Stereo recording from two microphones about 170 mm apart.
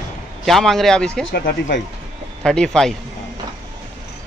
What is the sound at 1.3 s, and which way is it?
Speech, 90° left.